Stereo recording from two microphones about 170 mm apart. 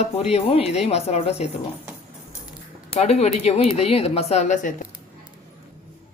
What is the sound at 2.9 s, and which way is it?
Speech, 40° left (ahead or behind).